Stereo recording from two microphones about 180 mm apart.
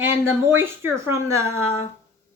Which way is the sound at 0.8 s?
15° right (ahead or behind).